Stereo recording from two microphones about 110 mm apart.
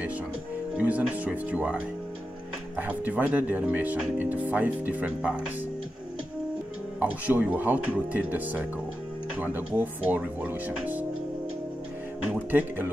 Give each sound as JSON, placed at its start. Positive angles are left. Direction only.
{"t": 0.7, "sound": "speech", "side_deg": -15}
{"t": 7.0, "sound": "speech", "side_deg": -15}
{"t": 12.4, "sound": "speech", "side_deg": -15}